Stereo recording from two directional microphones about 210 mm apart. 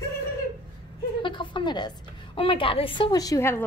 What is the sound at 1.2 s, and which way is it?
A woman's voice, 25° left (ahead or behind).